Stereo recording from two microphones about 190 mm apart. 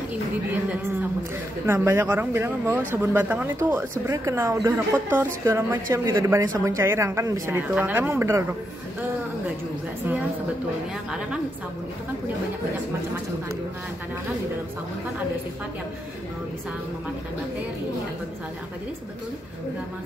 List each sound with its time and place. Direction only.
1.7 s speech: 15° right (ahead or behind)